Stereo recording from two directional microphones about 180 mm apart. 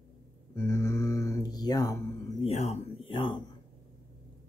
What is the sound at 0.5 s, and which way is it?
Speech, 15° left (ahead or behind).